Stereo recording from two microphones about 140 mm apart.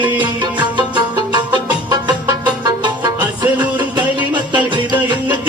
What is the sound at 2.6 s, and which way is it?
Music, 30° right (ahead or behind).